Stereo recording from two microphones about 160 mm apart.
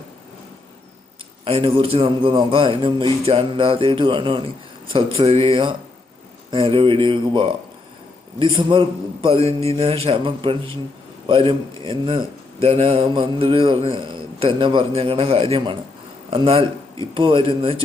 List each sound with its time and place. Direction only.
1.5 s speech: 35° right (ahead or behind)